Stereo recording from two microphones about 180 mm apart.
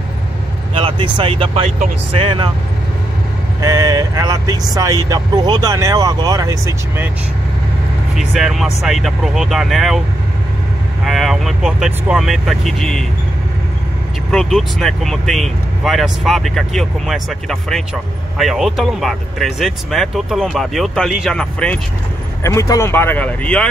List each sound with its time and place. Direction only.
0.7 s speech: 30° right (ahead or behind)
3.6 s speech: 15° right (ahead or behind)
8.1 s speech: centre (ahead or behind)
11.1 s speech: centre (ahead or behind)
14.3 s speech: centre (ahead or behind)
22.4 s speech: 15° left (ahead or behind)